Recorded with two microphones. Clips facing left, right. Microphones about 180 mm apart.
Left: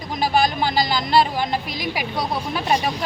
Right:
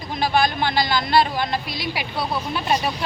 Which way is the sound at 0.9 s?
15° left (ahead or behind).